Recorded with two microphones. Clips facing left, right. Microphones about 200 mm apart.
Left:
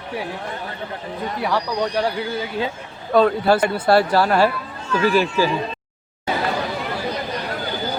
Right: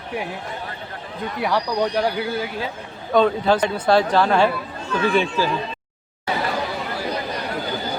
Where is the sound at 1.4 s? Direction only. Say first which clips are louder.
Right 1 dB; 10° right (ahead or behind).